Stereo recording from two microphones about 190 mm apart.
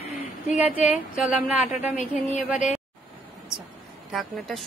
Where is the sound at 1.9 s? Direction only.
35° left (ahead or behind).